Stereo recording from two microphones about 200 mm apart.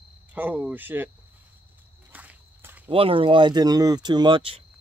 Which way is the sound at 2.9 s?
25° right (ahead or behind).